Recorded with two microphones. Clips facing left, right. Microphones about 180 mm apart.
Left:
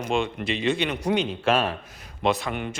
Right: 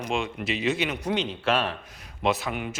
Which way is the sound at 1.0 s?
10° left (ahead or behind).